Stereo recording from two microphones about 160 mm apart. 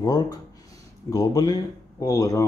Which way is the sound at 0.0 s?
25° left (ahead or behind).